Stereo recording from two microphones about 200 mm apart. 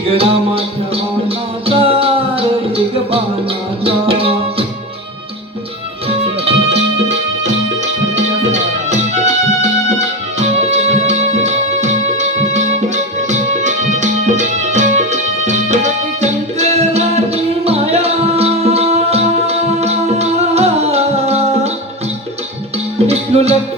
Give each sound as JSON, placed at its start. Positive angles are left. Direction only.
{"t": 0.1, "sound": "music", "side_deg": -30}
{"t": 6.1, "sound": "music", "side_deg": -30}
{"t": 23.0, "sound": "music", "side_deg": -30}